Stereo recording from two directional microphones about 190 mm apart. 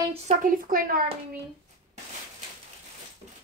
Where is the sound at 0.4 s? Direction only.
45° right (ahead or behind).